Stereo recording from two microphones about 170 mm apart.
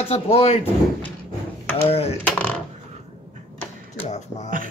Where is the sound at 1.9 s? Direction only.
35° left (ahead or behind).